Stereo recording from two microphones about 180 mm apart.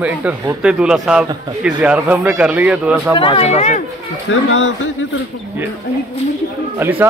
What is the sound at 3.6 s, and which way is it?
Speech, 45° left (ahead or behind).